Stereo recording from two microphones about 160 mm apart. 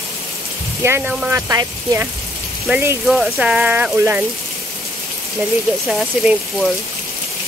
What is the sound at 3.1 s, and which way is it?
Speech, 5° right (ahead or behind).